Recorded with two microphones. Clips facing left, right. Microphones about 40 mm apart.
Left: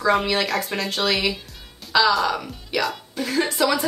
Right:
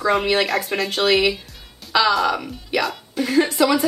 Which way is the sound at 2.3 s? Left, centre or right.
Centre.